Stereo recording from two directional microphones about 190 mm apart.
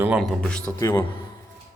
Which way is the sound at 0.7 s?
15° left (ahead or behind).